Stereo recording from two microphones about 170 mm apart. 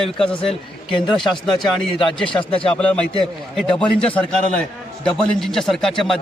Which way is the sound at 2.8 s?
5° left (ahead or behind).